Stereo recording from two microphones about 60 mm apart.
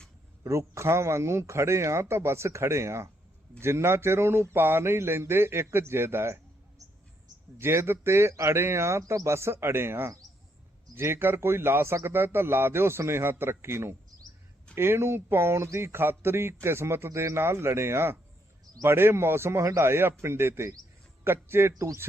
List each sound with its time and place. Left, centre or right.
0.4 s speech: right
7.6 s a man's voice: right